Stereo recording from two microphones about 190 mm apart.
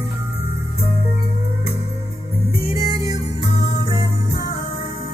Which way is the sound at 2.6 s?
20° right (ahead or behind).